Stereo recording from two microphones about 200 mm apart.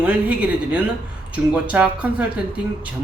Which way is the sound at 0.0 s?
5° right (ahead or behind).